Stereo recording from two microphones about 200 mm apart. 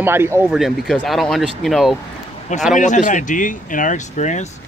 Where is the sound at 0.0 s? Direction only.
10° right (ahead or behind).